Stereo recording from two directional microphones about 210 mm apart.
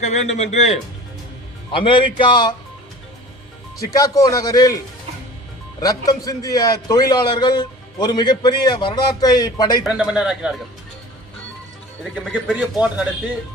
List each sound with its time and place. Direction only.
0.0 s a man's voice: 35° left (ahead or behind)
3.8 s speech: 15° left (ahead or behind)
5.8 s a man's voice: 15° left (ahead or behind)
9.8 s speech: 5° right (ahead or behind)
12.1 s speech: 5° right (ahead or behind)